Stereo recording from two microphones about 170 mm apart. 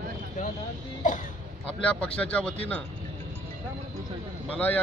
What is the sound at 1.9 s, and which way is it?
Speech, 5° left (ahead or behind).